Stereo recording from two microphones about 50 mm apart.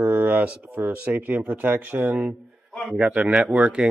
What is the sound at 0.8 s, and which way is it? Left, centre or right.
Speech, right.